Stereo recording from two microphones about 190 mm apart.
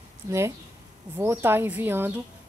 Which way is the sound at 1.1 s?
10° right (ahead or behind).